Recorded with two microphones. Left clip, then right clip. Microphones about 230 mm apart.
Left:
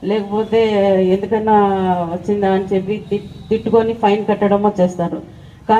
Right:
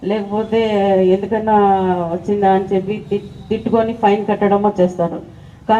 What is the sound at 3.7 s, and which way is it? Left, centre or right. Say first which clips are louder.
Speech: even; right.